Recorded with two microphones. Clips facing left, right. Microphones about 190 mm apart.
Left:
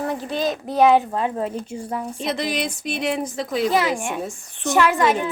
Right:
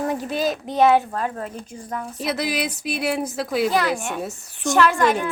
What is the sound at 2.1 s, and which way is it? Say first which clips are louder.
A woman's voice: right 2 dB; 5° right (ahead or behind).